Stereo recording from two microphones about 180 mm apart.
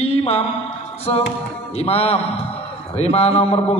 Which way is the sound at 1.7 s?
35° left (ahead or behind).